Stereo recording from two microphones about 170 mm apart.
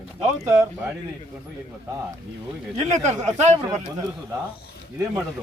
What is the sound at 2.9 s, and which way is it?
Speech, 45° right (ahead or behind).